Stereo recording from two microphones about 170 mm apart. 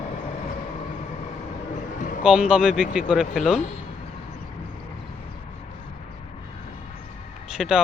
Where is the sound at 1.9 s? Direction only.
50° left (ahead or behind).